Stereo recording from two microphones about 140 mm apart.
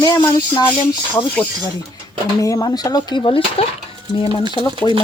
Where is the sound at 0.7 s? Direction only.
10° left (ahead or behind).